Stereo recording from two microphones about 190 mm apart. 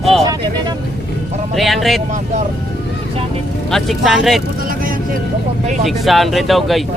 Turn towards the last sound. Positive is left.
turn(degrees=0)  # may be behind; listen again after turning